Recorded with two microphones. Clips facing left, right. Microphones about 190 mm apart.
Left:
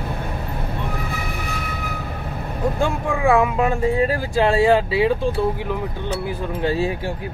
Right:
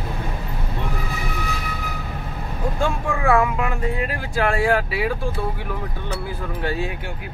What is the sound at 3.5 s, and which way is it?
Speech, 30° left (ahead or behind).